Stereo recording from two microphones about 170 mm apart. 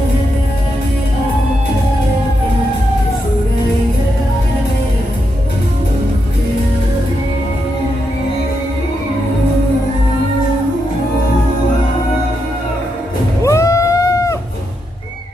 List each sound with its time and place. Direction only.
13.4 s music: 15° left (ahead or behind)